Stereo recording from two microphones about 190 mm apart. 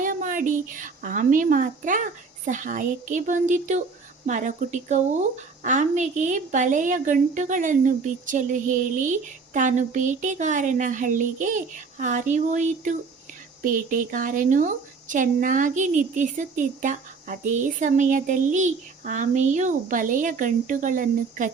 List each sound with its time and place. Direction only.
0.0 s a woman's voice: 45° right (ahead or behind)